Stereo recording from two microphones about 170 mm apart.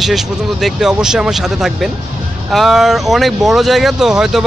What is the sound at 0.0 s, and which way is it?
Speech, centre (ahead or behind).